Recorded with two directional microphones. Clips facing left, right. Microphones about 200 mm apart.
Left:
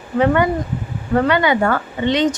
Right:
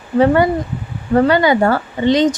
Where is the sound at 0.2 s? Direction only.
35° right (ahead or behind).